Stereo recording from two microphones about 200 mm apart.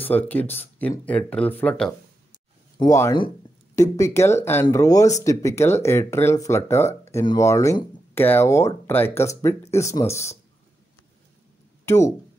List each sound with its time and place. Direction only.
0.1 s speech: 10° left (ahead or behind)
2.8 s speech: 15° left (ahead or behind)
11.8 s a sound: 15° left (ahead or behind)